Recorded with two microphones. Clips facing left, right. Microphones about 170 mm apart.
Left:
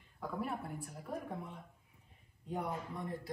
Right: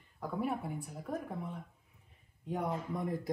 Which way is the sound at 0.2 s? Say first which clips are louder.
Right 4 dB; centre (ahead or behind).